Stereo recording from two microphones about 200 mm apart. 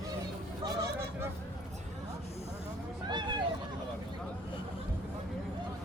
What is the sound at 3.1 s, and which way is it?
Hubbub, 20° right (ahead or behind).